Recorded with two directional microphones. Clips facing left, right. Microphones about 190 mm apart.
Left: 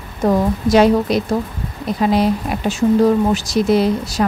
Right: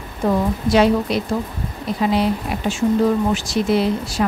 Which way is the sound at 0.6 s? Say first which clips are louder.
Left 3 dB; 40° left (ahead or behind).